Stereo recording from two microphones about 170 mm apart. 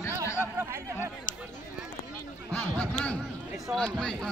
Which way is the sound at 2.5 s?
10° left (ahead or behind).